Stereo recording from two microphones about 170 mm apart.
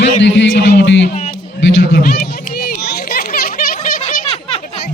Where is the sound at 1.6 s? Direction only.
75° left (ahead or behind); by 2.2 s 60° left (ahead or behind).